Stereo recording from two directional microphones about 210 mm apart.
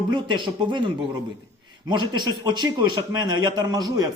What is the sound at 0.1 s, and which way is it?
A man's voice, 20° right (ahead or behind).